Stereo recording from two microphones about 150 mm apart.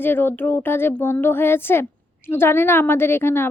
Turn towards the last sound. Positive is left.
turn(degrees=15)  # may be behind; listen again after turning